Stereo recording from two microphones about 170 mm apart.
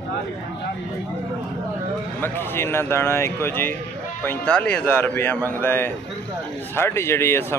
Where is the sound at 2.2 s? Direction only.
15° left (ahead or behind).